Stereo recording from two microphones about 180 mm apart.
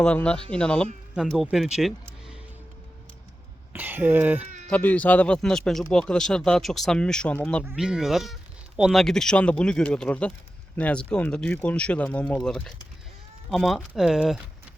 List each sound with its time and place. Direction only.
0.0 s speech: 5° left (ahead or behind)
3.7 s a sound: 10° right (ahead or behind)
4.4 s bleat: 40° right (ahead or behind)
4.7 s speech: 10° left (ahead or behind)
7.6 s speech: 5° right (ahead or behind)